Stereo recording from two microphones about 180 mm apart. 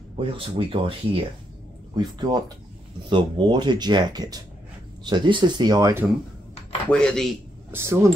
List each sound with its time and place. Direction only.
0.3 s speech: 30° right (ahead or behind)
6.9 s speech: 5° left (ahead or behind)
7.7 s speech: 15° right (ahead or behind)